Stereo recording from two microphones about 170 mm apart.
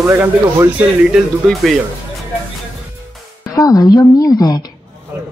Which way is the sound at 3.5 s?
20° left (ahead or behind).